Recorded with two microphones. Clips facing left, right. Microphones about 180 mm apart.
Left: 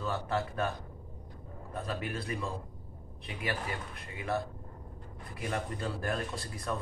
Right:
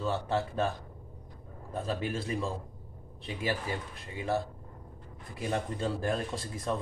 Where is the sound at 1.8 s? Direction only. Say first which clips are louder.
Right 4 dB; 30° right (ahead or behind).